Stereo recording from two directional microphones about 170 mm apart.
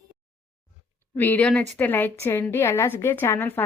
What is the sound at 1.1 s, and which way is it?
A woman's voice, 10° left (ahead or behind).